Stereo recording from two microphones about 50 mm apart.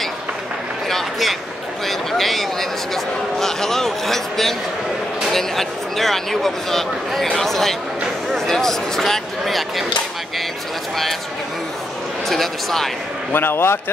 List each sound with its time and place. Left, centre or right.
0.8 s a sound: centre
1.9 s speech: centre
12.3 s speech: centre
13.3 s a man's voice: left